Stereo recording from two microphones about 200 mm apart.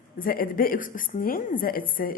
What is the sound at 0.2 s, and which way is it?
A woman's voice, 45° left (ahead or behind).